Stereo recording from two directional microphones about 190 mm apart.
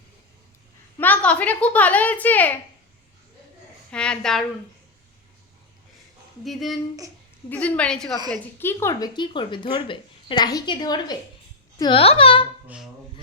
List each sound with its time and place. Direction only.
0.9 s a woman's voice: 10° left (ahead or behind)
3.9 s a woman's voice: 5° left (ahead or behind)
6.4 s a woman's voice: centre (ahead or behind); by 12.5 s 30° left (ahead or behind)
12.6 s speech: 5° right (ahead or behind)